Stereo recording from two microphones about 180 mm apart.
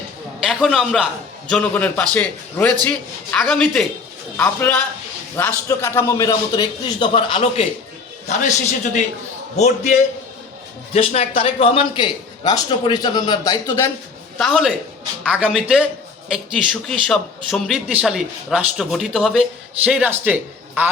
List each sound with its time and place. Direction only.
0.3 s a man's voice: centre (ahead or behind)
5.4 s a man's voice: 15° left (ahead or behind); by 7.7 s 30° left (ahead or behind)
8.3 s a man's voice: 40° left (ahead or behind); by 13.9 s 15° left (ahead or behind)
14.3 s speech: centre (ahead or behind)